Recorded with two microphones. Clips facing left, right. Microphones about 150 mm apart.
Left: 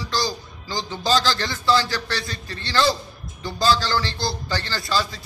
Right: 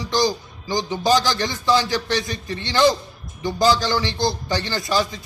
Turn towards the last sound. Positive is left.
turn(degrees=-20)  # may be behind; listen again after turning